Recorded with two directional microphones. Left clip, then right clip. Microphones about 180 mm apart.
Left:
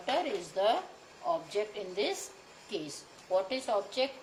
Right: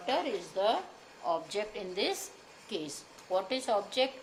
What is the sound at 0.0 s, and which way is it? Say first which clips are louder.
Speech: even; 15° right (ahead or behind).